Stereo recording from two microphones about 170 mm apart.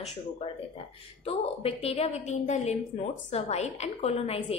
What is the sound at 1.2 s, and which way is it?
A woman's voice, 35° left (ahead or behind).